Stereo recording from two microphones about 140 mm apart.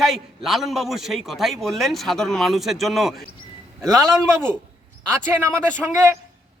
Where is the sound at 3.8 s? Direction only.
20° right (ahead or behind).